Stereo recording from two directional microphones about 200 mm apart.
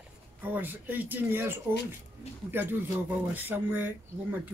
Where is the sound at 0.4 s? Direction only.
10° right (ahead or behind).